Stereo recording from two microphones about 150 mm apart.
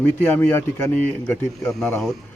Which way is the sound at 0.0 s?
10° left (ahead or behind).